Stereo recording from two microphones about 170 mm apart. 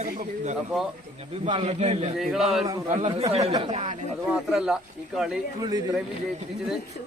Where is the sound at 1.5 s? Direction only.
35° right (ahead or behind).